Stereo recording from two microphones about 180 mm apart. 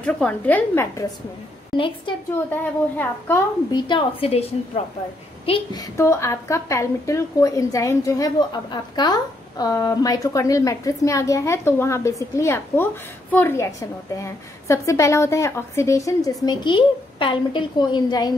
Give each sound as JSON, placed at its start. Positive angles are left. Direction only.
{"t": 0.0, "sound": "a child's voice", "side_deg": 5}
{"t": 2.1, "sound": "a woman's voice", "side_deg": 25}
{"t": 2.5, "sound": "a child's voice", "side_deg": 10}
{"t": 3.8, "sound": "a woman's voice", "side_deg": 30}